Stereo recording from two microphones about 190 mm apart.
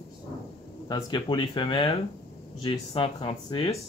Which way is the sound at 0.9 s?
25° left (ahead or behind).